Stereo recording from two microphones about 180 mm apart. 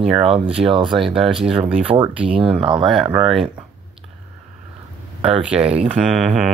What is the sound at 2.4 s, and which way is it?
Speech, 30° right (ahead or behind).